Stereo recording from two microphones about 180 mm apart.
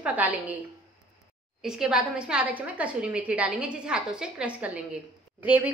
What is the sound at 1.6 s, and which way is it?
A woman's voice, 5° right (ahead or behind).